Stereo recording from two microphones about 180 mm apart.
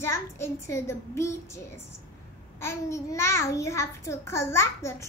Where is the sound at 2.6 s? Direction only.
15° left (ahead or behind).